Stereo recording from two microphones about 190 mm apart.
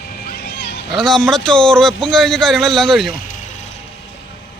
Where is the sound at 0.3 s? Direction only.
55° left (ahead or behind).